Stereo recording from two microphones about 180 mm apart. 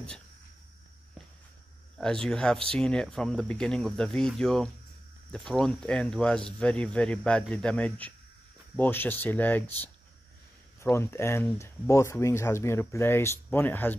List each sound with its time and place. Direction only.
2.0 s speech: 5° left (ahead or behind)